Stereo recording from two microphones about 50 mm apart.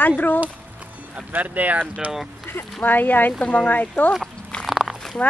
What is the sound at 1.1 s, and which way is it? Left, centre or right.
Speech, right.